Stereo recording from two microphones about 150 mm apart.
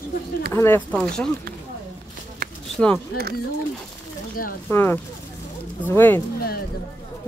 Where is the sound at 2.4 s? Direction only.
90° right.